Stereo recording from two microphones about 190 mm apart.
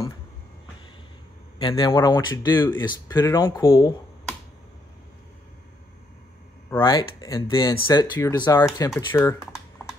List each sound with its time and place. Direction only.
1.6 s speech: 20° left (ahead or behind)
2.8 s speech: 20° left (ahead or behind)
6.8 s speech: 20° left (ahead or behind)